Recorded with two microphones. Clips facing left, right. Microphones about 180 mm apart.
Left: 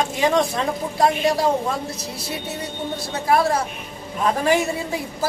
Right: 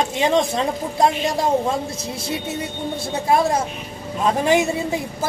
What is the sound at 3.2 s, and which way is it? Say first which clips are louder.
Speech: even; 20° right (ahead or behind).